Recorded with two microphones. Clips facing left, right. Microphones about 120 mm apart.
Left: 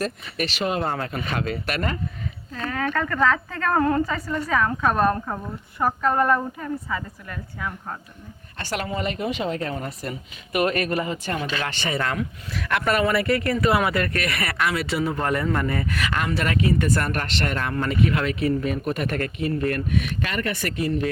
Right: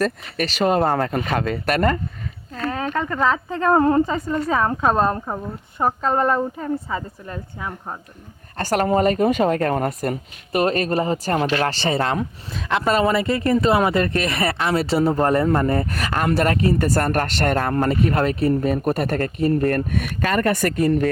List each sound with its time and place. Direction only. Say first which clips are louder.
0.0 s speech: right 5 dB; 40° right (ahead or behind)
2.7 s speech: left 1 dB; 20° right (ahead or behind)
8.5 s speech: right 9 dB; 45° right (ahead or behind)
10.5 s speech: right 3 dB; 30° right (ahead or behind)